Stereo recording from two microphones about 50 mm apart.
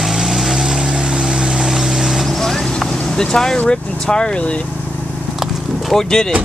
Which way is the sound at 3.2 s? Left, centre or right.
Centre.